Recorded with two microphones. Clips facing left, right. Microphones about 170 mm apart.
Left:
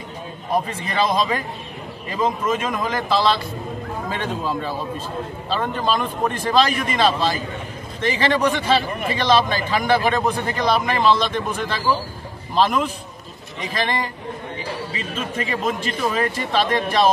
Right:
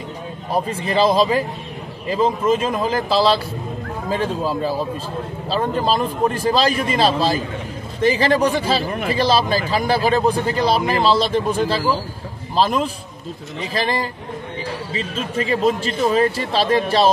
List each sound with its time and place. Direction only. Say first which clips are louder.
0.7 s a man's voice: right 5 dB; 30° right (ahead or behind)
15.0 s a man's voice: right 6 dB; 30° right (ahead or behind)